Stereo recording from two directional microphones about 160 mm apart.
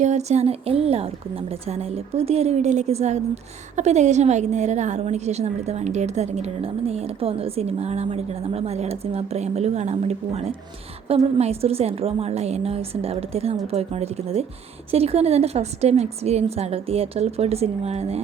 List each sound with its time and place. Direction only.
0.0 s a woman's voice: 45° right (ahead or behind)